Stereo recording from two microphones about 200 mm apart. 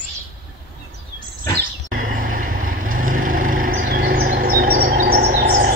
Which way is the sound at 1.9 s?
45° right (ahead or behind).